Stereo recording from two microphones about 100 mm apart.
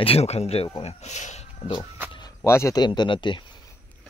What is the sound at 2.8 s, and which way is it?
Speech, 50° left (ahead or behind).